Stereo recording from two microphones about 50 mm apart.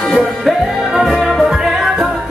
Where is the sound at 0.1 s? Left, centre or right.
Centre.